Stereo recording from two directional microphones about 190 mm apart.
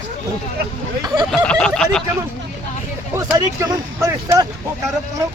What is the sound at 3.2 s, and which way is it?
Speech, 15° right (ahead or behind).